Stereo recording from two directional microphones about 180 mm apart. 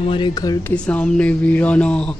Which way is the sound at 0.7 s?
5° left (ahead or behind).